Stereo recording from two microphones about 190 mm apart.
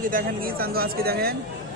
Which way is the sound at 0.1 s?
50° right (ahead or behind).